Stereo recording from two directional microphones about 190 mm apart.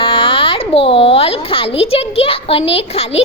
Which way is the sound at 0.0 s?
25° left (ahead or behind).